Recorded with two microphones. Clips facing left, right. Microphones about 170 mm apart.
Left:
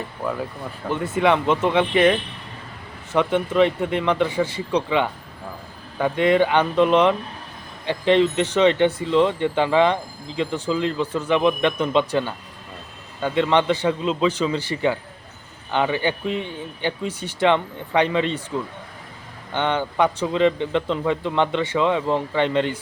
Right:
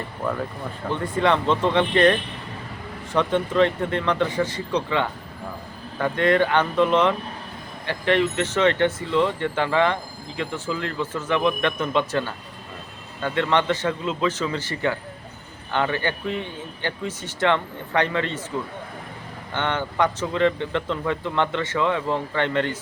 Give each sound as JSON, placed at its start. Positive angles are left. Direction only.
{"t": 0.2, "sound": "speech", "side_deg": 5}
{"t": 19.5, "sound": "speech", "side_deg": 15}